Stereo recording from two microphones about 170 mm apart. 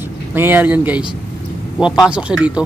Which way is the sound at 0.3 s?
10° right (ahead or behind).